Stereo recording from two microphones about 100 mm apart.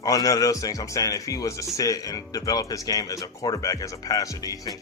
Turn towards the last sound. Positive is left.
turn(degrees=35)  # may be behind; listen again after turning